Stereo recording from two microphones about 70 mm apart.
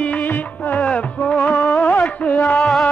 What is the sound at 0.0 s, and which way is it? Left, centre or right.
Music, left.